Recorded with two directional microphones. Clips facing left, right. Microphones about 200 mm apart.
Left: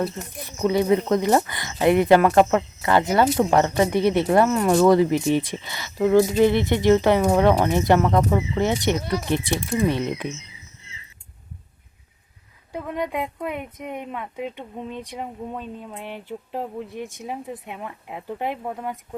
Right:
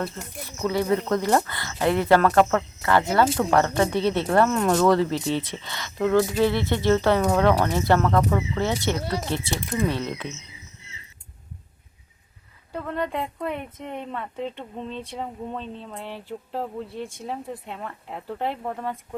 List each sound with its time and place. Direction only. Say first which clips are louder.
0.3 s speech: left 4 dB; 20° left (ahead or behind)
12.7 s speech: left 1 dB; 15° left (ahead or behind)